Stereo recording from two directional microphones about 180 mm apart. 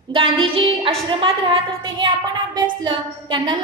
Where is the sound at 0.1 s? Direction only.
30° right (ahead or behind).